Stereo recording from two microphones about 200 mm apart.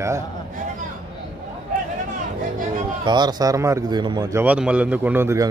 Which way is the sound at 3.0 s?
20° right (ahead or behind).